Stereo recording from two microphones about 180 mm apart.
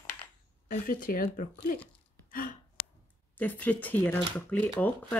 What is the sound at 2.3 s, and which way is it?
Gasp, 45° left (ahead or behind).